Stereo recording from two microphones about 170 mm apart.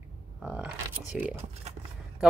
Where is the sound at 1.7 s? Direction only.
40° right (ahead or behind).